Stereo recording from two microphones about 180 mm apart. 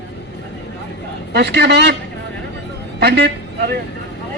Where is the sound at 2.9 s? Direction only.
65° right (ahead or behind).